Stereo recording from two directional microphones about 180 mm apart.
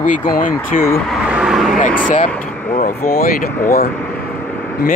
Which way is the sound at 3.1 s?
55° left (ahead or behind).